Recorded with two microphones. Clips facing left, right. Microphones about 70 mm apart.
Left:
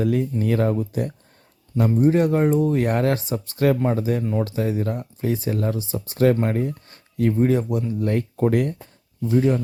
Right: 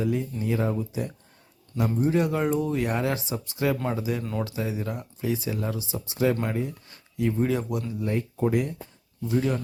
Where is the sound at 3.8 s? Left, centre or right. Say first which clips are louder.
Left 6 dB; left.